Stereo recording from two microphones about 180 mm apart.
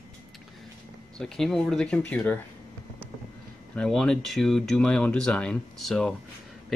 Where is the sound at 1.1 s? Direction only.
5° left (ahead or behind).